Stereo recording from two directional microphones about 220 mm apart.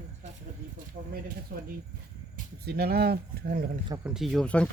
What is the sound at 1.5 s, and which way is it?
Speech, 45° right (ahead or behind).